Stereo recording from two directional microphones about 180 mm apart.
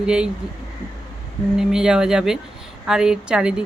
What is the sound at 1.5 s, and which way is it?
Speech, 5° right (ahead or behind).